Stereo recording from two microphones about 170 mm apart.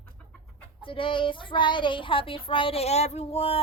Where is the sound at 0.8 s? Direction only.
30° left (ahead or behind).